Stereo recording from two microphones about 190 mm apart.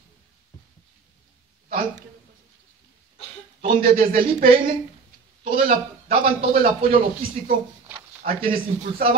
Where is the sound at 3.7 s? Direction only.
50° right (ahead or behind).